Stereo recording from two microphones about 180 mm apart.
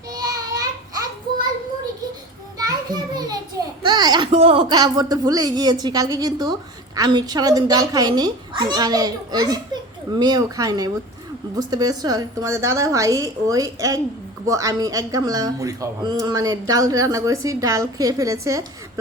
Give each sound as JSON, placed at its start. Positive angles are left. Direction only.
{"t": 0.1, "sound": "a sound", "side_deg": -20}
{"t": 2.6, "sound": "children playing", "side_deg": -20}
{"t": 3.8, "sound": "a woman's voice", "side_deg": -25}